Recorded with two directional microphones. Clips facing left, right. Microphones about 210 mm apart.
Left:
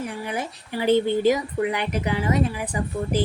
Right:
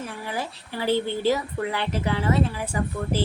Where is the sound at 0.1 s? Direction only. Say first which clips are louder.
Left 2 dB; 20° left (ahead or behind).